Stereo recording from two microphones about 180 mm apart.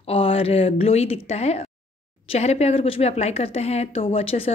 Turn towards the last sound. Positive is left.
turn(degrees=35)  # may be behind; listen again after turning